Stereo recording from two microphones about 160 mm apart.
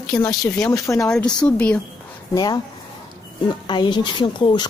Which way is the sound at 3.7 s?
30° left (ahead or behind).